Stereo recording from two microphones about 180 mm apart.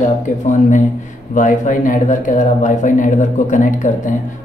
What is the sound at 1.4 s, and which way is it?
Speech, 45° left (ahead or behind).